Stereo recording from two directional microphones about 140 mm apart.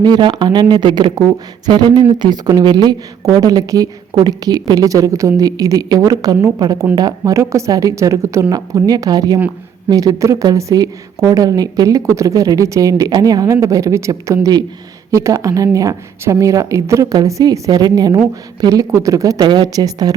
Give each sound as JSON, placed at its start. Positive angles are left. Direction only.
{"t": 0.0, "sound": "speech", "side_deg": -30}